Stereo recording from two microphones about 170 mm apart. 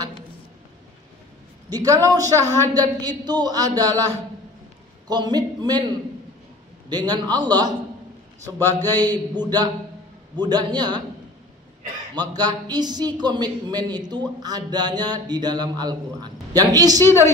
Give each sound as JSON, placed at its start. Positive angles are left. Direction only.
{"t": 1.7, "sound": "a man's voice", "side_deg": -20}
{"t": 5.0, "sound": "a man's voice", "side_deg": -25}
{"t": 6.9, "sound": "a man's voice", "side_deg": -25}
{"t": 9.0, "sound": "a man's voice", "side_deg": -25}
{"t": 12.2, "sound": "a man's voice", "side_deg": -25}
{"t": 17.0, "sound": "a woman's voice", "side_deg": 15}